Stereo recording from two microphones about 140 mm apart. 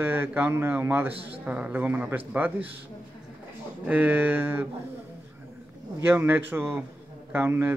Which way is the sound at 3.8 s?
10° right (ahead or behind).